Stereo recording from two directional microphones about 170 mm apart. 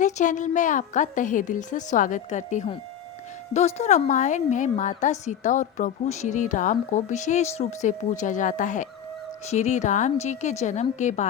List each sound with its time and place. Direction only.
0.0 s a woman's voice: 45° left (ahead or behind)